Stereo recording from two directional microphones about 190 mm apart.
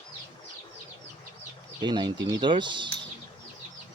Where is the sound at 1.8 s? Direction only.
25° right (ahead or behind).